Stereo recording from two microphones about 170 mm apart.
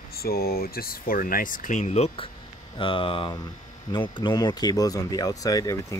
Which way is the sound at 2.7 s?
30° left (ahead or behind).